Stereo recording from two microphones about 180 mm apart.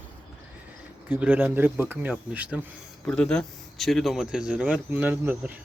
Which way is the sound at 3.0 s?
5° left (ahead or behind).